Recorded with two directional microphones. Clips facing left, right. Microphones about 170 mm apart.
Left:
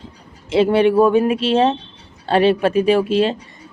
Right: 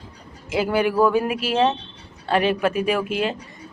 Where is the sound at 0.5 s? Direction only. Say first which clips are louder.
Left 7 dB; 25° left (ahead or behind).